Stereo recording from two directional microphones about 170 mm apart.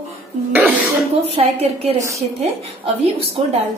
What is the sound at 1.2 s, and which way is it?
A woman's voice, 35° right (ahead or behind).